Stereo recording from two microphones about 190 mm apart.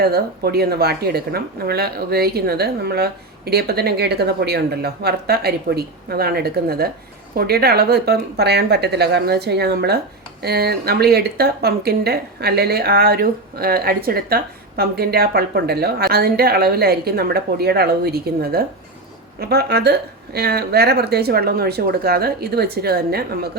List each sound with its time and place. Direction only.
0.0 s speech: 55° right (ahead or behind)